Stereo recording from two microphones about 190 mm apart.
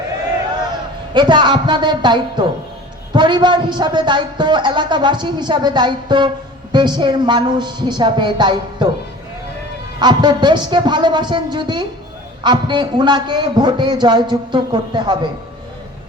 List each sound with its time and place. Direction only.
1.1 s a man's voice: 25° right (ahead or behind)
10.0 s a man's voice: 25° right (ahead or behind)